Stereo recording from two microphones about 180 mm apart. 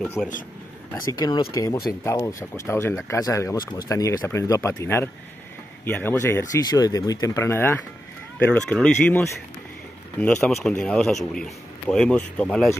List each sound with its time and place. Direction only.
0.2 s a man's voice: 5° left (ahead or behind)
1.1 s a man's voice: 25° left (ahead or behind); by 9.2 s 5° left (ahead or behind)
10.2 s a man's voice: 10° left (ahead or behind)